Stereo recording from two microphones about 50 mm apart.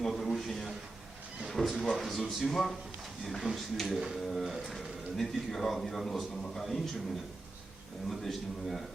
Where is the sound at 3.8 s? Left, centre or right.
Centre.